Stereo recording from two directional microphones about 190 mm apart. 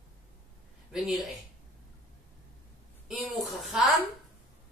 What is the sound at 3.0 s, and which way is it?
Speech, centre (ahead or behind).